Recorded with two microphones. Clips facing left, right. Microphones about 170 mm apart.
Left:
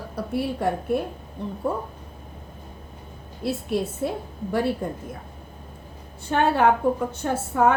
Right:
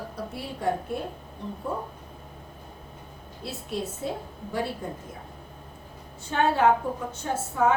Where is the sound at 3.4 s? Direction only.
60° left (ahead or behind).